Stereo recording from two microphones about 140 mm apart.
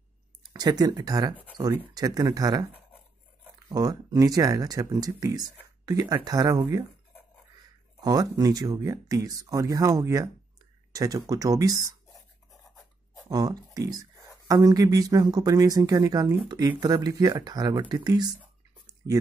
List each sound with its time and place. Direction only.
0.4 s speech: 30° right (ahead or behind)
1.3 s speech: 10° left (ahead or behind)
2.0 s speech: 25° right (ahead or behind)
3.6 s speech: 30° right (ahead or behind)
8.0 s speech: 25° right (ahead or behind)
13.3 s speech: 25° right (ahead or behind)